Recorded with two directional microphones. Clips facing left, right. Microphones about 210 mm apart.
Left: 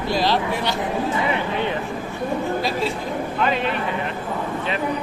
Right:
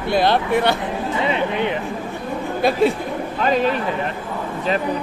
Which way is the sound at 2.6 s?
55° right (ahead or behind).